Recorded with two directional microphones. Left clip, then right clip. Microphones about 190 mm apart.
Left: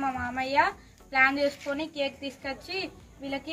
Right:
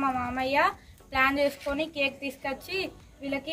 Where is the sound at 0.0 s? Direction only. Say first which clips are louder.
Right 2 dB; 20° right (ahead or behind).